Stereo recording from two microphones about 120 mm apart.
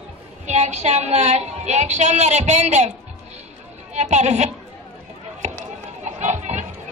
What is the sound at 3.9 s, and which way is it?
Speech, 75° right (ahead or behind).